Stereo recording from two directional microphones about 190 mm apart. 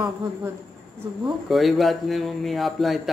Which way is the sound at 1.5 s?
Centre (ahead or behind).